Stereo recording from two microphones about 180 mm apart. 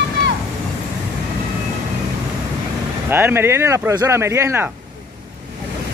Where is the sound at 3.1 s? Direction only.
10° right (ahead or behind).